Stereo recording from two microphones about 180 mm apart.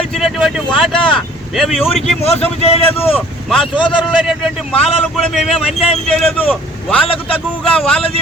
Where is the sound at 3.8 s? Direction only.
25° left (ahead or behind).